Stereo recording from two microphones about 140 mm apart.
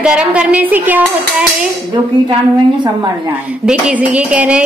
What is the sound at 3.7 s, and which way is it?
Speech, 10° right (ahead or behind).